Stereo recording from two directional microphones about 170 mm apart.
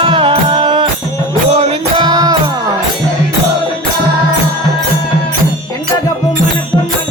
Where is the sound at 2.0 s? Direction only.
25° right (ahead or behind).